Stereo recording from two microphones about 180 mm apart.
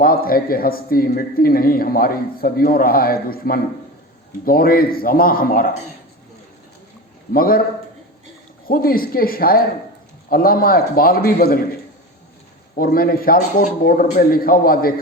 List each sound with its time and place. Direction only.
0.0 s a man's voice: 55° left (ahead or behind)
7.3 s a man's voice: 55° left (ahead or behind)
8.6 s a man's voice: 55° left (ahead or behind)
12.7 s a man's voice: 55° left (ahead or behind)